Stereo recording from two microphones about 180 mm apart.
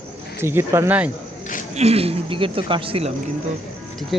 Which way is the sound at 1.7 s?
35° right (ahead or behind).